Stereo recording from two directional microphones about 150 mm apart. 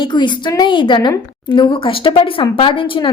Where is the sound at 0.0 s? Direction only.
30° left (ahead or behind).